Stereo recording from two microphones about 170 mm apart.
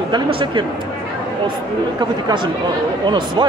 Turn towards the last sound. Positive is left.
turn(degrees=-25)  # may be behind; listen again after turning